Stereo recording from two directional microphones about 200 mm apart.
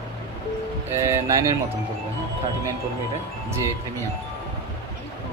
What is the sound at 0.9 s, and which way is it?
Speech, 15° right (ahead or behind).